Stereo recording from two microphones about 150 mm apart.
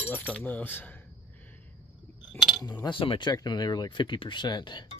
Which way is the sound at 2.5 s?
30° left (ahead or behind).